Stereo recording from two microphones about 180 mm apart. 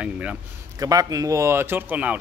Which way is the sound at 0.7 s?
20° right (ahead or behind).